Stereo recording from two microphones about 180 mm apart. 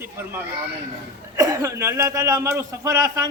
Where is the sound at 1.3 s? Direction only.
15° right (ahead or behind).